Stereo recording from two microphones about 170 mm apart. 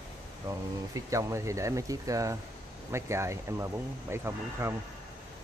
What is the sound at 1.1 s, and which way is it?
Speech, 15° right (ahead or behind).